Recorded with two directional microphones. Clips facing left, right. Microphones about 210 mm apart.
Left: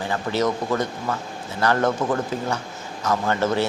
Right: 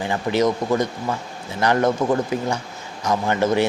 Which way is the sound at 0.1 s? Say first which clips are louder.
Right 3 dB; 15° right (ahead or behind).